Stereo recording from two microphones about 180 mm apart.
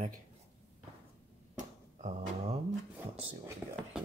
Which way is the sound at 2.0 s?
40° right (ahead or behind).